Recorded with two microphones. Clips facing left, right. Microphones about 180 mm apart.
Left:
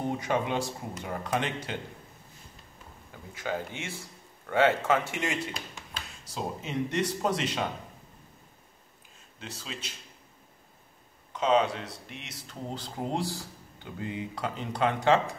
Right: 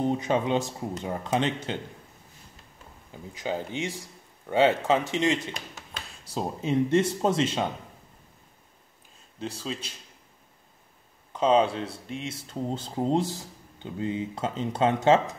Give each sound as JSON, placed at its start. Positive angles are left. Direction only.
{"t": 0.0, "sound": "speech", "side_deg": -20}
{"t": 3.1, "sound": "speech", "side_deg": -20}
{"t": 6.2, "sound": "speech", "side_deg": -30}
{"t": 9.4, "sound": "speech", "side_deg": -35}
{"t": 11.3, "sound": "speech", "side_deg": -30}